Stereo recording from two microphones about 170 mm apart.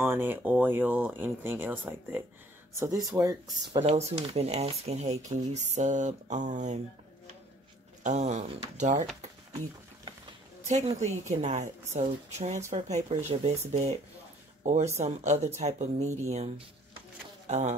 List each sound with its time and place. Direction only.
0.0 s speech: 15° right (ahead or behind)
4.3 s speech: 40° right (ahead or behind)
8.0 s speech: 40° right (ahead or behind)
10.6 s a woman's voice: 40° right (ahead or behind)